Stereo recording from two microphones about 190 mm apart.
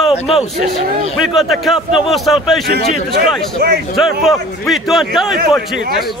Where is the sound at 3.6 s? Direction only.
60° right (ahead or behind).